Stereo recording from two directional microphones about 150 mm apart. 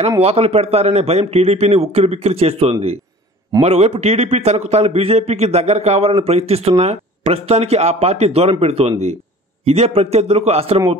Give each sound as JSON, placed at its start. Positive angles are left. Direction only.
{"t": 0.2, "sound": "a man's voice", "side_deg": -45}